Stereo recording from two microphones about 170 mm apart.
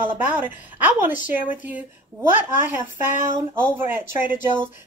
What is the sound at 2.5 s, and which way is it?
Speech, 45° left (ahead or behind).